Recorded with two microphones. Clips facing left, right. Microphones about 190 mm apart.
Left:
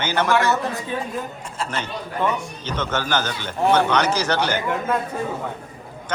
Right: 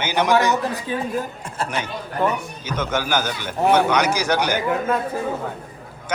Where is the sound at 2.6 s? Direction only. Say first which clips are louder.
Right 2 dB; 10° right (ahead or behind).